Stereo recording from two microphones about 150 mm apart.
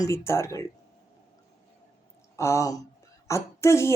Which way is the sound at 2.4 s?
20° left (ahead or behind).